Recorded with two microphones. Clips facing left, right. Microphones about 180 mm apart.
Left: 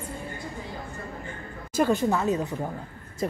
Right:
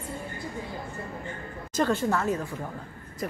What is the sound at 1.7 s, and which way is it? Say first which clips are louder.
Speech: left 2 dB; 15° left (ahead or behind).